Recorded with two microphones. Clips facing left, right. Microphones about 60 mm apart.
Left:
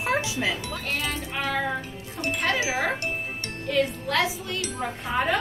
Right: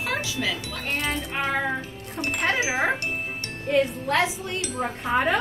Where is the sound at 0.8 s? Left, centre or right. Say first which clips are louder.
Right 3 dB; right.